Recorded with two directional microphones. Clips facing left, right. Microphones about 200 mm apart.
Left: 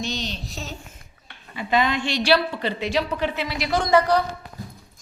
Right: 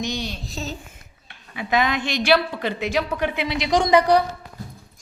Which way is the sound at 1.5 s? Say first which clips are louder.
Even; 10° right (ahead or behind).